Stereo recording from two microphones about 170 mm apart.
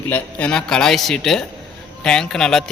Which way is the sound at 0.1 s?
10° left (ahead or behind).